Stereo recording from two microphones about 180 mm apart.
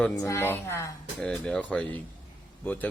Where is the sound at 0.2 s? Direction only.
15° left (ahead or behind).